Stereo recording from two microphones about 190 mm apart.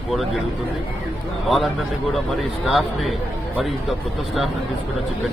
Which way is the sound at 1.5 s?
Centre (ahead or behind).